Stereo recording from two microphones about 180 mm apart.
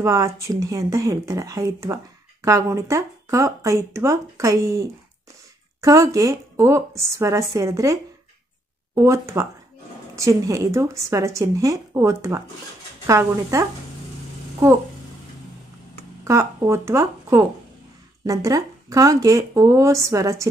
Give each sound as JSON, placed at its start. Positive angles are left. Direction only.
{"t": 0.0, "sound": "speech", "side_deg": -15}
{"t": 16.3, "sound": "speech", "side_deg": -15}